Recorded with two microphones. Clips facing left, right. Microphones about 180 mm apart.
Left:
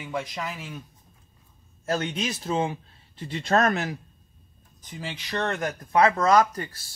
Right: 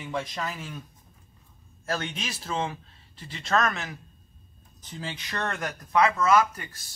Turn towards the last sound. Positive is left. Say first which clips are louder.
# left 2 dB
turn(degrees=40)  # may be behind; listen again after turning